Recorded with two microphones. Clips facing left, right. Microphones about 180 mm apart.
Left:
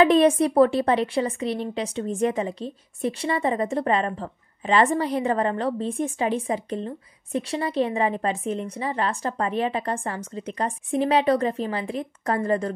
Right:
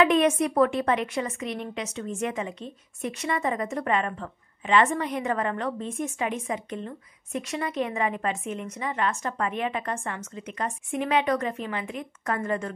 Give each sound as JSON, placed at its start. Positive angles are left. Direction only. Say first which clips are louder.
{"t": 0.0, "sound": "a woman's voice", "louder": "left 4 dB", "side_deg": 35}